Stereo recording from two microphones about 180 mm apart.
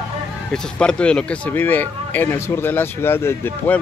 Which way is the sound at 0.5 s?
5° left (ahead or behind).